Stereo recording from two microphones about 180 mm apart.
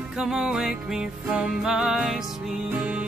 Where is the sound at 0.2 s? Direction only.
5° right (ahead or behind).